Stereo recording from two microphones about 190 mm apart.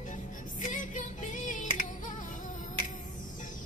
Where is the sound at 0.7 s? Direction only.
40° left (ahead or behind).